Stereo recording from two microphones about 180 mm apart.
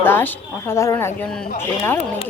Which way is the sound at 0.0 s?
10° left (ahead or behind).